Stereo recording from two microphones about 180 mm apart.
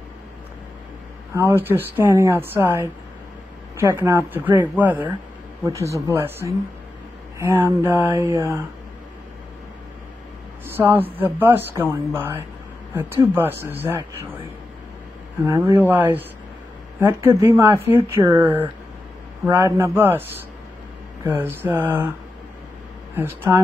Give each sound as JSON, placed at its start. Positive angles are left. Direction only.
{"t": 1.3, "sound": "speech", "side_deg": -15}
{"t": 8.0, "sound": "speech", "side_deg": -10}
{"t": 10.8, "sound": "speech", "side_deg": -10}
{"t": 15.4, "sound": "speech", "side_deg": -15}
{"t": 23.1, "sound": "speech", "side_deg": -15}